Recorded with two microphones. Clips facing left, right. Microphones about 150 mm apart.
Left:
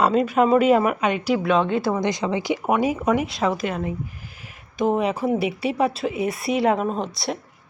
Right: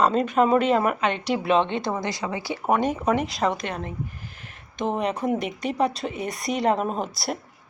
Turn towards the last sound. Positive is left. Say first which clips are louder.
# left 2 dB
turn(degrees=0)  # may be behind; listen again after turning